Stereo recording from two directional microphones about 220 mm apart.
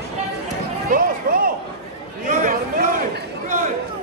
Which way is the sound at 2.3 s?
35° right (ahead or behind).